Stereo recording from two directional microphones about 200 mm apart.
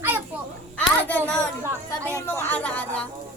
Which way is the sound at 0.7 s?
5° left (ahead or behind).